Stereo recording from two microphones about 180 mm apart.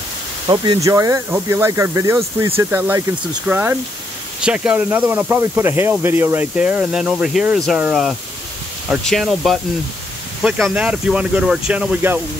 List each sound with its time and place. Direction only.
0.5 s speech: 20° right (ahead or behind)